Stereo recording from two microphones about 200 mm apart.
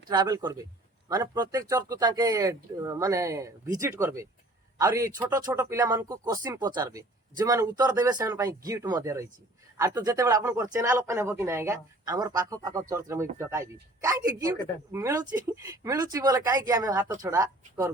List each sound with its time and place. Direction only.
0.1 s speech: 20° right (ahead or behind)